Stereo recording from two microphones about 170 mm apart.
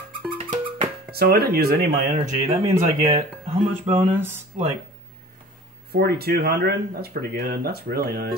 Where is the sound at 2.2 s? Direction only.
35° right (ahead or behind).